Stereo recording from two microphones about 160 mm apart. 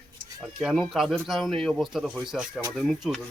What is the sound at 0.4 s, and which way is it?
Speech, 5° right (ahead or behind).